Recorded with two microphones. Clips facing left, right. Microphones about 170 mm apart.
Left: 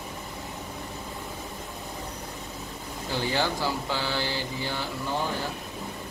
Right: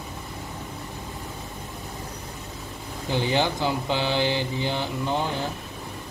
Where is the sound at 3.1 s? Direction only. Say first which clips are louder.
Right 4 dB; 20° right (ahead or behind).